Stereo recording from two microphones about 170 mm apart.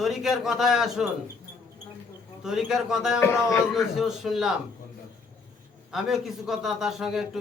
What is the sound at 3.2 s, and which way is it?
Speech, 15° left (ahead or behind).